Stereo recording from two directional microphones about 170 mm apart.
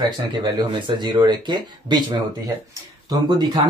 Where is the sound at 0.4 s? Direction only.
25° right (ahead or behind).